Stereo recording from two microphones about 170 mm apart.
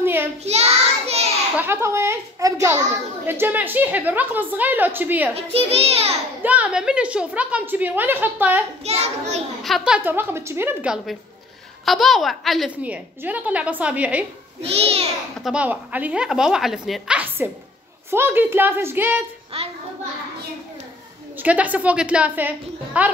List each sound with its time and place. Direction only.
0.0 s child singing: 15° right (ahead or behind)
0.4 s child singing: 40° right (ahead or behind)
1.6 s a woman's voice: 15° right (ahead or behind)
5.3 s a child's voice: 35° right (ahead or behind)
6.4 s a woman's voice: 10° right (ahead or behind)
8.8 s a child's voice: 40° right (ahead or behind)
9.6 s a woman's voice: centre (ahead or behind)
14.6 s a child's voice: 35° right (ahead or behind)
15.4 s a woman's voice: 5° right (ahead or behind)
19.5 s a child's voice: 35° right (ahead or behind)
21.4 s a woman's voice: 10° right (ahead or behind)